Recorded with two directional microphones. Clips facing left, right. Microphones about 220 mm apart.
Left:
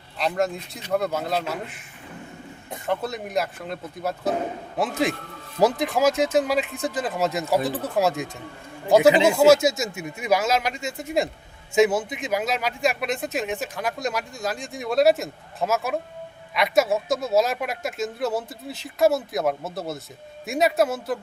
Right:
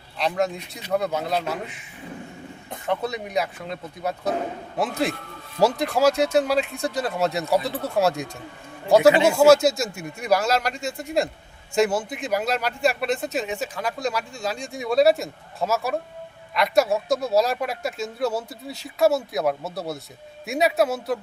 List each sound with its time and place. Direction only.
0.2 s speech: centre (ahead or behind)
2.6 s speech: 5° left (ahead or behind)
7.6 s speech: 15° left (ahead or behind)
7.9 s speech: centre (ahead or behind)
9.0 s speech: 20° left (ahead or behind)
9.5 s speech: centre (ahead or behind)